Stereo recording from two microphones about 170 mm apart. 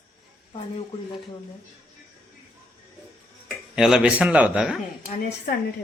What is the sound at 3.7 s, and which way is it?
A man's voice, 5° right (ahead or behind).